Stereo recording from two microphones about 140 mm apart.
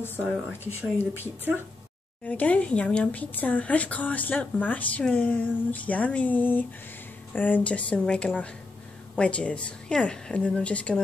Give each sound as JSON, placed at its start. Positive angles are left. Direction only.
{"t": 0.7, "sound": "speech", "side_deg": 15}
{"t": 2.2, "sound": "speech", "side_deg": 10}